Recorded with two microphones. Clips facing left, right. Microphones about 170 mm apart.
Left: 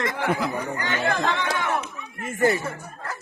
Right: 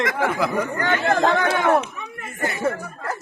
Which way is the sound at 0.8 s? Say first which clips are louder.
Right 6 dB; 50° right (ahead or behind).